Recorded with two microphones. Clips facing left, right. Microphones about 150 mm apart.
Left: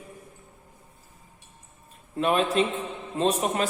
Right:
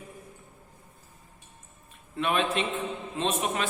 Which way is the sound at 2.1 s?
35° left (ahead or behind).